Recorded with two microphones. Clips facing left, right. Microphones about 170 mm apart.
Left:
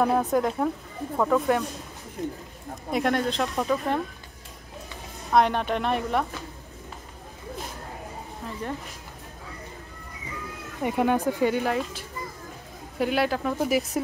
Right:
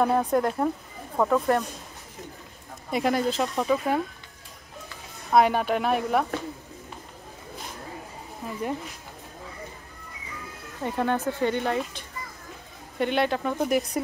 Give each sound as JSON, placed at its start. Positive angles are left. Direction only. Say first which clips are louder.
{"t": 0.0, "sound": "speech", "louder": "even", "side_deg": 0}
{"t": 2.9, "sound": "speech", "louder": "even", "side_deg": 0}
{"t": 5.3, "sound": "speech", "louder": "right 1 dB", "side_deg": -5}
{"t": 8.4, "sound": "speech", "louder": "right 2 dB", "side_deg": -10}
{"t": 10.8, "sound": "speech", "louder": "left 3 dB", "side_deg": 15}
{"t": 13.0, "sound": "speech", "louder": "even", "side_deg": 5}